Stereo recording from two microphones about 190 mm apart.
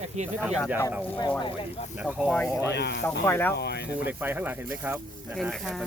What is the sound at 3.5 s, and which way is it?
Speech, 60° left (ahead or behind).